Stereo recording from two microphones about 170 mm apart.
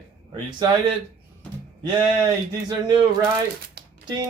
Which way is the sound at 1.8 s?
25° right (ahead or behind).